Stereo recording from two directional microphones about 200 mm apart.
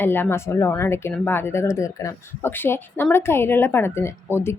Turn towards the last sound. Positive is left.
turn(degrees=15)  # may be behind; listen again after turning